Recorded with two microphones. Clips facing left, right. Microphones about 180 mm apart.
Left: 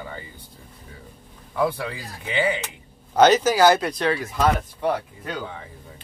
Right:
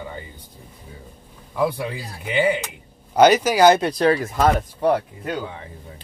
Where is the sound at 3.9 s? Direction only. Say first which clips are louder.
Right 5 dB; 35° right (ahead or behind).